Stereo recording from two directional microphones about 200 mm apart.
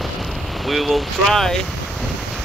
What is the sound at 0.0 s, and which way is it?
Vehicle, centre (ahead or behind).